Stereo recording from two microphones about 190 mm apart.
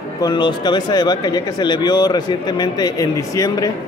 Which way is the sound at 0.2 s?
25° left (ahead or behind).